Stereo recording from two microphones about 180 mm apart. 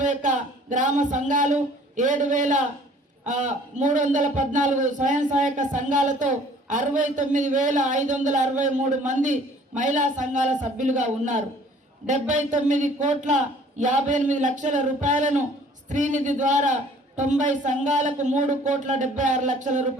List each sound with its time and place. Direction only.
0.0 s a man's voice: 45° right (ahead or behind)